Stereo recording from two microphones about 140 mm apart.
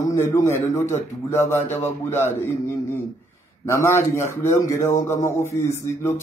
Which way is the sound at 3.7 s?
20° left (ahead or behind).